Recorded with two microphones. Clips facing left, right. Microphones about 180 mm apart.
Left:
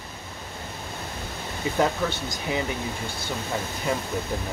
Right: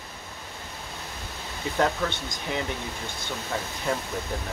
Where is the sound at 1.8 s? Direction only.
5° left (ahead or behind).